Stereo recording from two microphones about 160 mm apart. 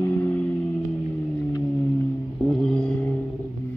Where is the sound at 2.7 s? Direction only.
5° left (ahead or behind).